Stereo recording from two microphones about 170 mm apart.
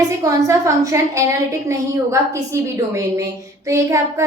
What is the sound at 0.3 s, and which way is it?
A woman's voice, 20° right (ahead or behind).